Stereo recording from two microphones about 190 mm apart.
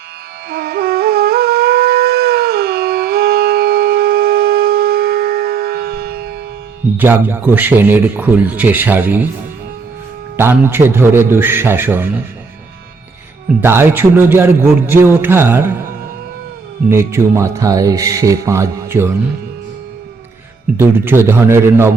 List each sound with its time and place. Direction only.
0.5 s music: 55° right (ahead or behind)
6.9 s a man's voice: 10° right (ahead or behind)
10.3 s a man's voice: 10° right (ahead or behind)
13.6 s a man's voice: 10° right (ahead or behind)
16.9 s a man's voice: 15° right (ahead or behind)
20.7 s a man's voice: 10° right (ahead or behind)